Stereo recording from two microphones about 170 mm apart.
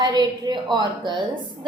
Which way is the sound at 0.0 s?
25° right (ahead or behind).